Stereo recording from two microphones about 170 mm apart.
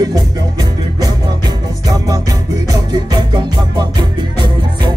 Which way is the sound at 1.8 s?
20° right (ahead or behind).